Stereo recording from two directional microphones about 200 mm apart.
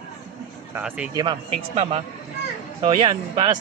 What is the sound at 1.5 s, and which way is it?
Speech, 30° right (ahead or behind).